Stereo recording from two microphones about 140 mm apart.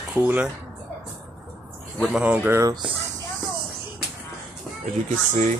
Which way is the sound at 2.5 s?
25° right (ahead or behind).